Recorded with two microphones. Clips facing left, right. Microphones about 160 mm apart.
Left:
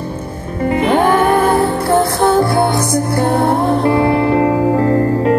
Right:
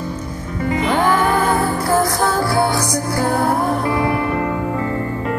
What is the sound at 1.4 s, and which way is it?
Music, 30° left (ahead or behind).